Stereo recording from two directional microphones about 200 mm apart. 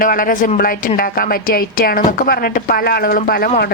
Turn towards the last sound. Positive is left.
turn(degrees=50)  # may be behind; listen again after turning